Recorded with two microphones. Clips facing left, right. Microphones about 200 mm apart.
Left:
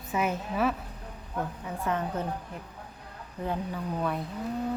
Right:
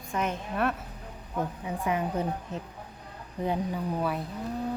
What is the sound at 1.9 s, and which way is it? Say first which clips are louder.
Speech: right 2 dB; 15° right (ahead or behind).